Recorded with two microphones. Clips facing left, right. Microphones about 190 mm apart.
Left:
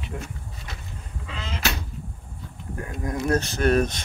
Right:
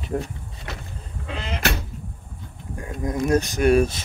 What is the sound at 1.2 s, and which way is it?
Sheep, 60° right (ahead or behind).